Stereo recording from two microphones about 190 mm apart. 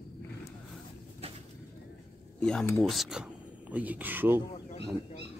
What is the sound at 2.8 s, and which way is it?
Speech, centre (ahead or behind).